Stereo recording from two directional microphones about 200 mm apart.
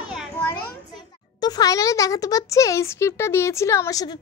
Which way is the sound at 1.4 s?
20° left (ahead or behind).